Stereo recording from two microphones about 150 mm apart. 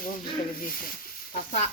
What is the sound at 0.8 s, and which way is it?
Sizzle, 70° left (ahead or behind).